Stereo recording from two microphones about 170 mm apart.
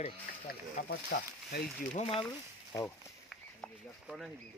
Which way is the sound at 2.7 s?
15° left (ahead or behind).